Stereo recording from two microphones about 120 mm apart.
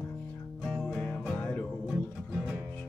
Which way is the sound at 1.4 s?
15° left (ahead or behind).